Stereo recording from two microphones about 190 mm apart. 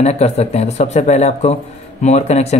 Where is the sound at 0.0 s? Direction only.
35° left (ahead or behind).